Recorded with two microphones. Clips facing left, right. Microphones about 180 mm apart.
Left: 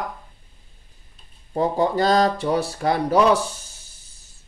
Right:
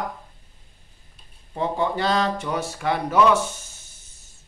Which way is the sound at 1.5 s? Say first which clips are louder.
Left 4 dB; 40° left (ahead or behind).